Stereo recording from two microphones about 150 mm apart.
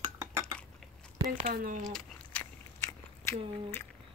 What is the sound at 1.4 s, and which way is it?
Speech, 65° right (ahead or behind).